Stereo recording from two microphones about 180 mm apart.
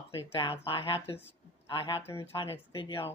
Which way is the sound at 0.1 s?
30° left (ahead or behind).